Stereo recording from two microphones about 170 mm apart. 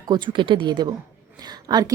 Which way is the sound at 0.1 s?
30° right (ahead or behind).